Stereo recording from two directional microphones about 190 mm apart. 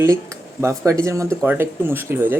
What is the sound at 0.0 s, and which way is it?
Speech, 15° right (ahead or behind).